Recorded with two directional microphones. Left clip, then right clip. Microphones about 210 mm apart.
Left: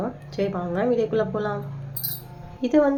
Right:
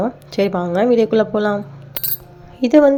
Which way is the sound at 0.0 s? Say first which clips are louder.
Right 8 dB; 45° right (ahead or behind).